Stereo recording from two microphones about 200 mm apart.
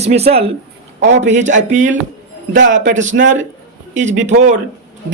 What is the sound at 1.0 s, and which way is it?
Speech, 65° right (ahead or behind).